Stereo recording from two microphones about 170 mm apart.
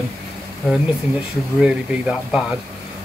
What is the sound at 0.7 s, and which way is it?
Speech, centre (ahead or behind).